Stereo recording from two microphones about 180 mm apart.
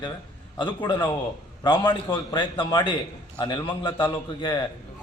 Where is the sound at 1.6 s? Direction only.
25° left (ahead or behind).